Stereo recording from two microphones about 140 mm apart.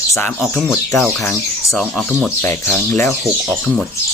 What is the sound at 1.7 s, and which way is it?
A man's voice, 10° left (ahead or behind).